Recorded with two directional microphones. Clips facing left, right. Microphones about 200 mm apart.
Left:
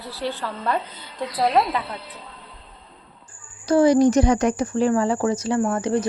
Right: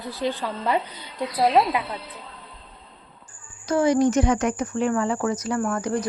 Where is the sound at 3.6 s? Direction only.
35° left (ahead or behind).